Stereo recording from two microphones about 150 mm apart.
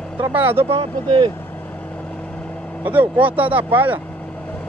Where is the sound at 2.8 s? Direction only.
10° right (ahead or behind).